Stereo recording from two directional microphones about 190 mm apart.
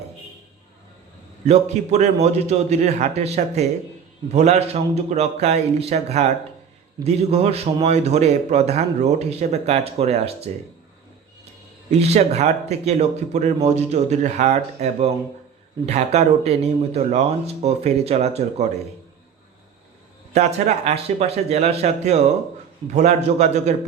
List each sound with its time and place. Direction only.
1.5 s a man's voice: 35° right (ahead or behind)
11.9 s a man's voice: 35° right (ahead or behind)
20.3 s a man's voice: 35° right (ahead or behind)